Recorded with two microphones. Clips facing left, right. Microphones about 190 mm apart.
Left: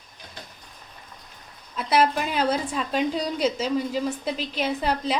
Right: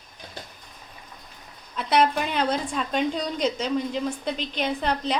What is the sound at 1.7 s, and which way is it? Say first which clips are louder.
A woman's voice: even; centre (ahead or behind).